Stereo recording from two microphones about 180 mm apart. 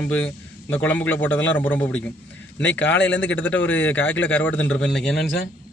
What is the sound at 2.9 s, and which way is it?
Speech, 85° left.